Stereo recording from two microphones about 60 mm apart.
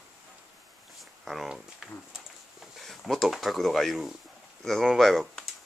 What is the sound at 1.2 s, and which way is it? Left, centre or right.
Speech, centre.